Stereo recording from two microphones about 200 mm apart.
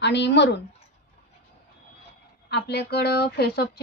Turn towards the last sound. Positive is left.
turn(degrees=55)  # may be behind; listen again after turning